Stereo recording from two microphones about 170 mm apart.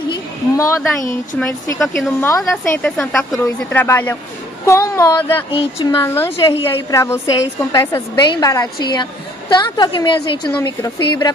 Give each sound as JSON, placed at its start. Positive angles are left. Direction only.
{"t": 0.1, "sound": "a sound", "side_deg": 20}
{"t": 1.8, "sound": "a woman's voice", "side_deg": 0}
{"t": 2.2, "sound": "child singing", "side_deg": 15}
{"t": 2.5, "sound": "a woman's voice", "side_deg": 5}
{"t": 3.8, "sound": "child singing", "side_deg": 15}
{"t": 6.6, "sound": "a woman's voice", "side_deg": 15}